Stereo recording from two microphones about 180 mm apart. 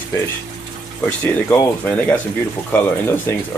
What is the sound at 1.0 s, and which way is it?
Speech, 10° left (ahead or behind).